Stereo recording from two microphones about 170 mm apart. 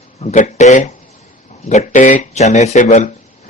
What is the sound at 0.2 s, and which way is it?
A man's voice, 45° left (ahead or behind).